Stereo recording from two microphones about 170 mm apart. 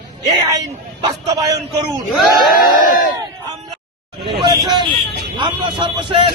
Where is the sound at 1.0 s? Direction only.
25° right (ahead or behind).